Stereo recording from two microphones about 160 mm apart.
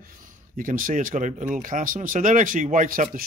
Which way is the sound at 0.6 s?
60° right (ahead or behind).